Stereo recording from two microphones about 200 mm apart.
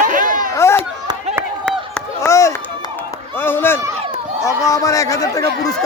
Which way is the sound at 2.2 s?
15° left (ahead or behind).